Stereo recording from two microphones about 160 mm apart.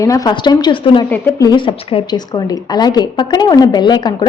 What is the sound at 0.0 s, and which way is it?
A woman's voice, 20° left (ahead or behind).